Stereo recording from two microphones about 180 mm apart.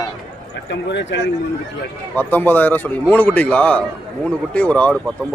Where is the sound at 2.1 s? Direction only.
10° left (ahead or behind).